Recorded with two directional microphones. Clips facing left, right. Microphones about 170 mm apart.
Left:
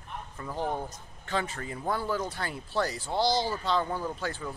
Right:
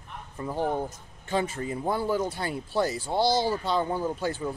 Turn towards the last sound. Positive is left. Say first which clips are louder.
# right 5 dB
turn(degrees=-20)  # may be behind; listen again after turning